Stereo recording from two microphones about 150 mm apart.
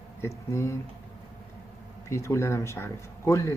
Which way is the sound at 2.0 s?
20° left (ahead or behind).